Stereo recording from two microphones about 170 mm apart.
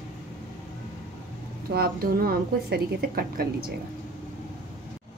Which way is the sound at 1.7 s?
65° right (ahead or behind).